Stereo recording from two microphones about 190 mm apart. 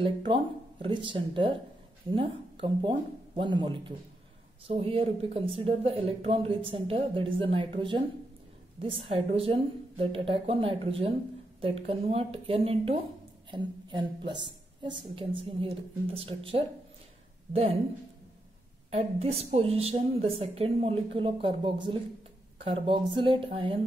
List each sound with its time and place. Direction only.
0.0 s a woman's voice: 25° right (ahead or behind)
18.9 s a woman's voice: 35° right (ahead or behind)